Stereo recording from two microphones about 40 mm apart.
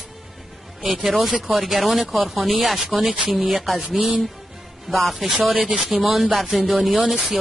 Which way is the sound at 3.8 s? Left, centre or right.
Centre.